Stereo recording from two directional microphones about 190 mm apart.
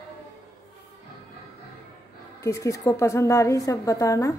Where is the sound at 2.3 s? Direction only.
15° left (ahead or behind).